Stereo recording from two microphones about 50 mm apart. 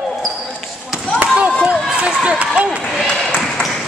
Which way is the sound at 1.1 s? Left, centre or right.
Right.